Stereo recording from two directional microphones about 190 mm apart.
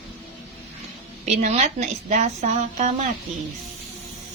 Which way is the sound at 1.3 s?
40° right (ahead or behind).